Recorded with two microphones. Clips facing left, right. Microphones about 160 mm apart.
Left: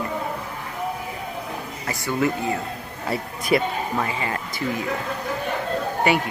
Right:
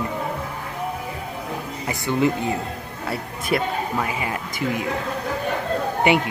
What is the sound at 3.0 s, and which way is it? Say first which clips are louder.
Speech: left 2 dB; centre (ahead or behind).